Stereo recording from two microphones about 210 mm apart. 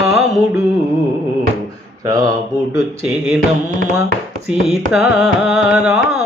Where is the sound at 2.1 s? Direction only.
15° right (ahead or behind).